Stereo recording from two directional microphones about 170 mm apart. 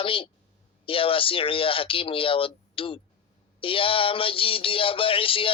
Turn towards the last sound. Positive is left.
turn(degrees=30)  # may be behind; listen again after turning